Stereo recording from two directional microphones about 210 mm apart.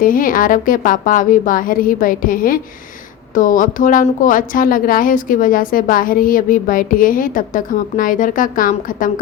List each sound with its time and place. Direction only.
0.0 s a woman's voice: 40° left (ahead or behind)